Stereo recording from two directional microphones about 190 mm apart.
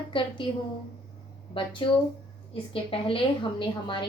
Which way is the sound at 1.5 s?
25° left (ahead or behind).